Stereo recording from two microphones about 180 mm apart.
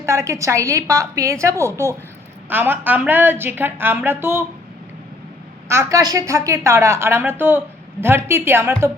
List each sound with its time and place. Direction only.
0.0 s a woman's voice: 15° right (ahead or behind)
5.6 s a woman's voice: 15° right (ahead or behind)